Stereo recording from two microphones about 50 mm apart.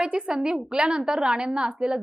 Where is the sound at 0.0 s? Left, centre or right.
Centre.